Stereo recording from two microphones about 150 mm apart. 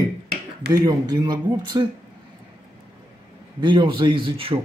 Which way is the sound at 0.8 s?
25° right (ahead or behind).